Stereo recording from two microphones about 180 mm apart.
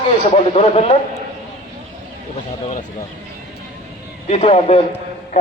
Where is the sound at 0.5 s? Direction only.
35° left (ahead or behind).